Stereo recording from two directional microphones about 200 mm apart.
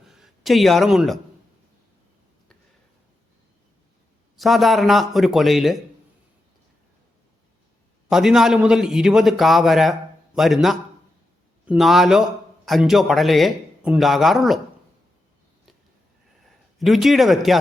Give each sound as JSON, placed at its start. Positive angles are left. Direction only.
{"t": 0.0, "sound": "a man's voice", "side_deg": 0}
{"t": 4.4, "sound": "a man's voice", "side_deg": 0}
{"t": 8.1, "sound": "a man's voice", "side_deg": 0}
{"t": 16.4, "sound": "a man's voice", "side_deg": 0}